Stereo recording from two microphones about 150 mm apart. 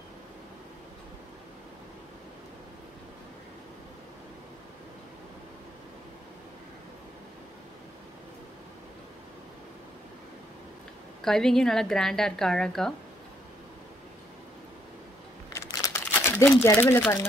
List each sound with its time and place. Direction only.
11.2 s a woman's voice: 5° left (ahead or behind)
15.5 s crumpling: 20° left (ahead or behind)